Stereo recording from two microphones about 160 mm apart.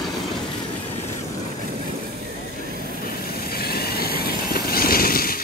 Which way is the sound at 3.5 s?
75° left (ahead or behind).